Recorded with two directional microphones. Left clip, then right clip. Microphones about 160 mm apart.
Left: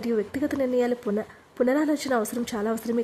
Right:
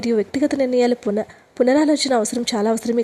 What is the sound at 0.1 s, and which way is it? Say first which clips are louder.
Speech: right 7 dB; 30° right (ahead or behind).